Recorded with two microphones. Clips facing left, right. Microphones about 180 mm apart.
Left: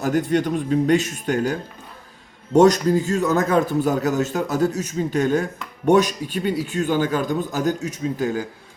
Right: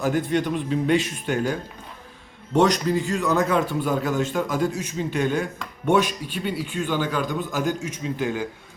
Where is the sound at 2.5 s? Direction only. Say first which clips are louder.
Left 5 dB; 45° left (ahead or behind).